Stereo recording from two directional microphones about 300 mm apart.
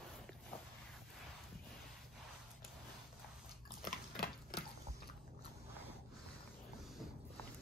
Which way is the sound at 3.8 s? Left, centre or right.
Left.